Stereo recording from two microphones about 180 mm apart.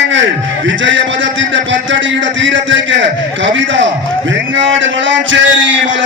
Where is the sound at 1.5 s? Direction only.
90° right.